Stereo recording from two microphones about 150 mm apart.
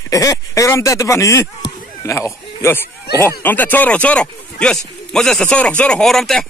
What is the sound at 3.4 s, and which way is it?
Speech, 10° left (ahead or behind).